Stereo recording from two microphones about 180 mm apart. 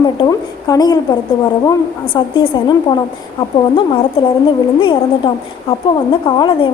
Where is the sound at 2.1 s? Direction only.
25° left (ahead or behind).